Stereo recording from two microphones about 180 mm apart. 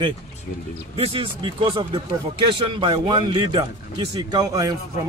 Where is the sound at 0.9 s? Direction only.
30° right (ahead or behind).